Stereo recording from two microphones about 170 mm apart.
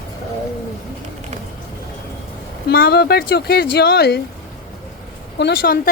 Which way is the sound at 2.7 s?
65° left (ahead or behind).